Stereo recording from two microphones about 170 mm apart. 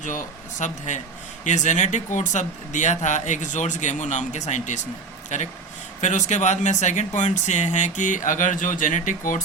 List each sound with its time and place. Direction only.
0.6 s speech: 45° left (ahead or behind)